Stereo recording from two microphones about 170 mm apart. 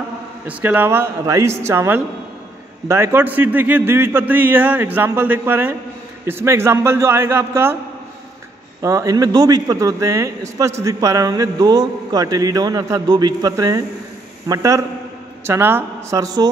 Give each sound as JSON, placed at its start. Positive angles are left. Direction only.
{"t": 0.5, "sound": "speech", "side_deg": -10}
{"t": 8.8, "sound": "a man's voice", "side_deg": -20}